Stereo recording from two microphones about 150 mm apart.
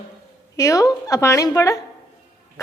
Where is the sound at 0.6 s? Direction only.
20° left (ahead or behind).